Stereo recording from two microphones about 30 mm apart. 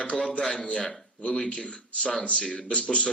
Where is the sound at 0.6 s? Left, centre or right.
Left.